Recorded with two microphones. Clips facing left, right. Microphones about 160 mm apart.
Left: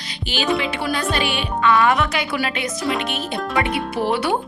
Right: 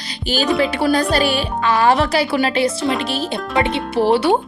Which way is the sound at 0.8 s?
35° right (ahead or behind).